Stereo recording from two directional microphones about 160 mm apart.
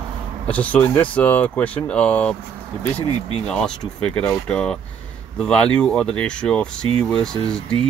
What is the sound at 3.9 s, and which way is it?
Speech, 5° left (ahead or behind).